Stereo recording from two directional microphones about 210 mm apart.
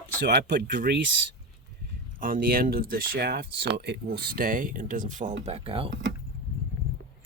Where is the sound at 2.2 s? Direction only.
45° right (ahead or behind); by 5.9 s 25° right (ahead or behind).